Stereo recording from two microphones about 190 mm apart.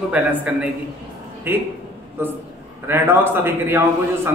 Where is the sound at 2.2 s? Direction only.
10° right (ahead or behind).